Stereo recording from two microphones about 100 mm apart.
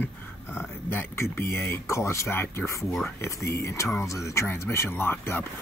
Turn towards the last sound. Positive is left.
turn(degrees=20)  # may be behind; listen again after turning